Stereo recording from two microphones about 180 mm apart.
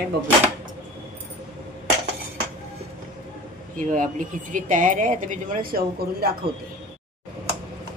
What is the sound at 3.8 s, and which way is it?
Speech, 45° right (ahead or behind).